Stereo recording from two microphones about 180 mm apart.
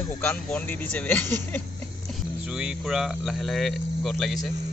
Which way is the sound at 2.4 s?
5° right (ahead or behind).